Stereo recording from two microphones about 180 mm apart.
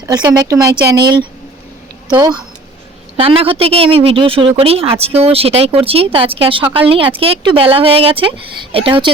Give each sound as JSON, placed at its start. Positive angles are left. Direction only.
{"t": 0.0, "sound": "a woman's voice", "side_deg": -20}